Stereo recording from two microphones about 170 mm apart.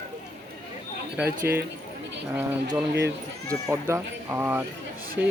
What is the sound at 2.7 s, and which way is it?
Speech, 15° right (ahead or behind).